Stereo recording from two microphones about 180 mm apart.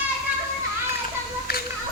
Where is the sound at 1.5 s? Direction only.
60° left (ahead or behind).